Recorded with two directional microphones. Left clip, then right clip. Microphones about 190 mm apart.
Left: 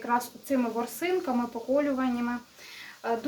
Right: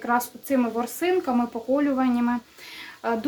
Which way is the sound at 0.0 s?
25° right (ahead or behind).